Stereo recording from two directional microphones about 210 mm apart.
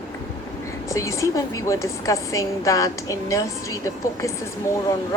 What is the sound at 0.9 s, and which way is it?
A woman's voice, 15° left (ahead or behind).